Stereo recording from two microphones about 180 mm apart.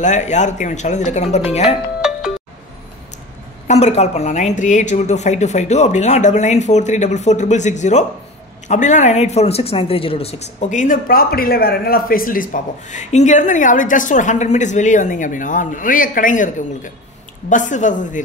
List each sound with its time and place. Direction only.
0.0 s a woman's voice: 40° left (ahead or behind)
2.0 s music: 5° right (ahead or behind)
3.6 s a woman's voice: 35° left (ahead or behind)